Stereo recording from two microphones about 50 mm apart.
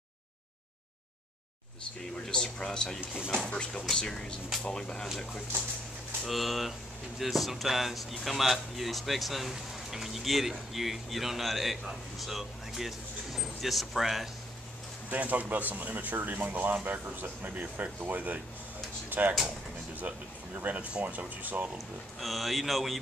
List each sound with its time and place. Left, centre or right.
2.3 s speech: centre
3.8 s speech: centre
6.2 s speech: centre
15.0 s speech: right
19.0 s a sound: right
20.0 s speech: right
21.7 s speech: centre